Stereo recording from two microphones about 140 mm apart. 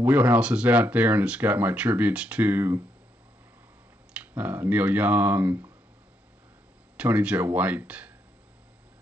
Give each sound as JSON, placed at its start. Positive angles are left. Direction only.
{"t": 0.0, "sound": "speech", "side_deg": -10}
{"t": 4.1, "sound": "speech", "side_deg": -10}
{"t": 7.0, "sound": "speech", "side_deg": -10}